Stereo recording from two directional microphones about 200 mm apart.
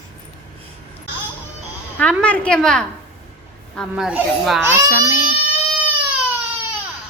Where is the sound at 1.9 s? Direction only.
5° left (ahead or behind).